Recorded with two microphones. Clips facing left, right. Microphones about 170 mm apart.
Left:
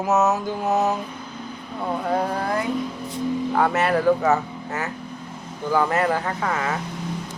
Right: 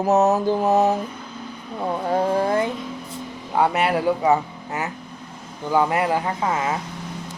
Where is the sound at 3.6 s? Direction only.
15° right (ahead or behind).